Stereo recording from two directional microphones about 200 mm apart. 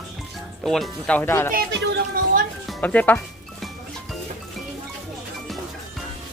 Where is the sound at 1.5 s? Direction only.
50° right (ahead or behind).